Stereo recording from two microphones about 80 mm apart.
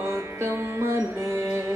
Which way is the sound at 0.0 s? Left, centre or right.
Right.